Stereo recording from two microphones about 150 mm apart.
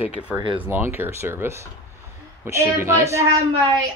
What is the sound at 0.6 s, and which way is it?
A woman's voice, 15° right (ahead or behind).